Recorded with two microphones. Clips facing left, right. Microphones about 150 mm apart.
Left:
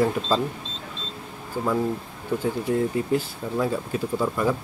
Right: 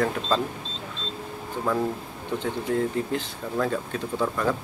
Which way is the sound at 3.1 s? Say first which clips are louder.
Left 4 dB; 10° left (ahead or behind).